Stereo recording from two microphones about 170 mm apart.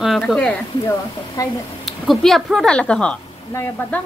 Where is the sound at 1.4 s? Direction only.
20° left (ahead or behind).